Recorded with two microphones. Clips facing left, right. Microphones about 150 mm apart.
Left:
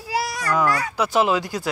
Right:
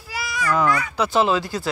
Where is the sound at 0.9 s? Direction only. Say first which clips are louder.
Even; 10° left (ahead or behind).